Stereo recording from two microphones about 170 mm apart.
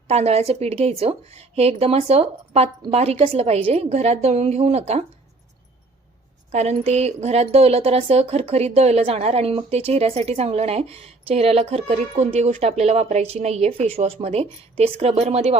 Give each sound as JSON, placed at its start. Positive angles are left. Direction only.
{"t": 0.1, "sound": "a woman's voice", "side_deg": -40}
{"t": 6.5, "sound": "a woman's voice", "side_deg": -40}